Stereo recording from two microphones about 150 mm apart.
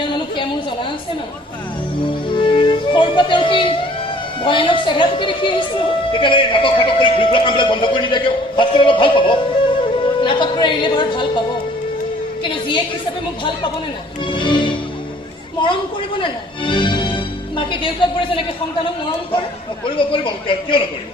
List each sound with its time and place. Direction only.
2.0 s music: 35° left (ahead or behind)
4.4 s a man's voice: 35° left (ahead or behind)
14.3 s music: 35° left (ahead or behind)
15.6 s a sound: 35° left (ahead or behind)
16.2 s speech: 35° left (ahead or behind)
20.0 s a man's voice: 35° left (ahead or behind)